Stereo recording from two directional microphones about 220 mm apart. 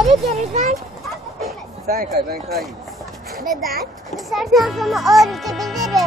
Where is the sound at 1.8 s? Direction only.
45° right (ahead or behind).